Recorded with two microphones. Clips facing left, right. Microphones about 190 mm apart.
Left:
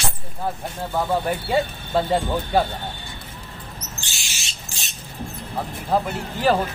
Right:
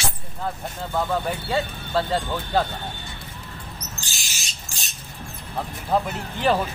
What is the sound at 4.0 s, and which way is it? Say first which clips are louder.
Owl: even; 40° right (ahead or behind).